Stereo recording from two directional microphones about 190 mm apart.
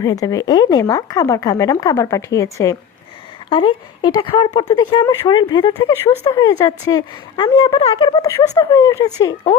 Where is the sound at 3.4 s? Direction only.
25° left (ahead or behind).